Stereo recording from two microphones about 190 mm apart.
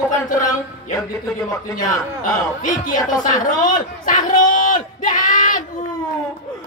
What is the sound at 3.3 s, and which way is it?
Speech, 45° left (ahead or behind).